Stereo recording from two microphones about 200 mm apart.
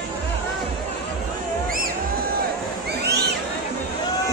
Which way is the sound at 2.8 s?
55° right (ahead or behind).